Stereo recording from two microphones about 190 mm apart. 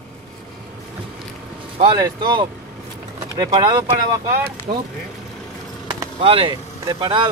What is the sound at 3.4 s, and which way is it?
Speech, 25° right (ahead or behind).